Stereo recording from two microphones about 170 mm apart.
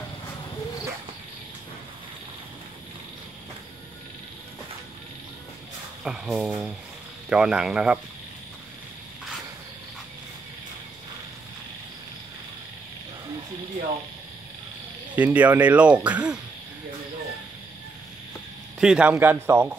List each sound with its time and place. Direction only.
6.0 s speech: 5° right (ahead or behind)
15.1 s speech: 10° right (ahead or behind)
18.8 s speech: 5° right (ahead or behind)